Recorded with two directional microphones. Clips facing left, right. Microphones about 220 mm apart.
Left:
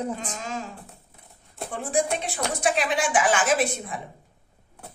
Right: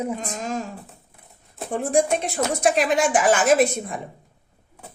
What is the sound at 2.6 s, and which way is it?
A woman's voice, 45° right (ahead or behind).